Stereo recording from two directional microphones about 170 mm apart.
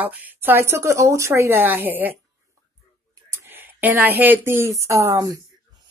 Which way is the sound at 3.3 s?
10° right (ahead or behind).